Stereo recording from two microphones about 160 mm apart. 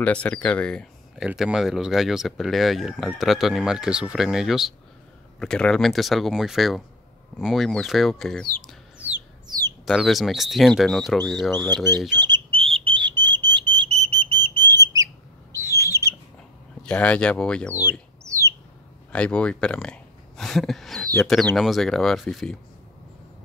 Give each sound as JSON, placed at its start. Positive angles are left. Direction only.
{"t": 0.0, "sound": "speech", "side_deg": 10}
{"t": 8.9, "sound": "a sound", "side_deg": -10}
{"t": 9.5, "sound": "a sound", "side_deg": -25}
{"t": 9.8, "sound": "speech", "side_deg": 0}
{"t": 11.7, "sound": "speech", "side_deg": -25}
{"t": 12.2, "sound": "a sound", "side_deg": -30}
{"t": 14.3, "sound": "whistle", "side_deg": -30}
{"t": 15.5, "sound": "bird", "side_deg": -15}
{"t": 16.8, "sound": "speech", "side_deg": 5}
{"t": 18.2, "sound": "bird", "side_deg": -20}
{"t": 19.1, "sound": "speech", "side_deg": 5}